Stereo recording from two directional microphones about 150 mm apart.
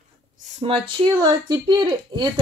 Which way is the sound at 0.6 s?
35° right (ahead or behind).